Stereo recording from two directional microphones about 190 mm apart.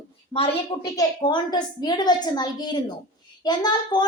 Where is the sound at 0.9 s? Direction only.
20° left (ahead or behind).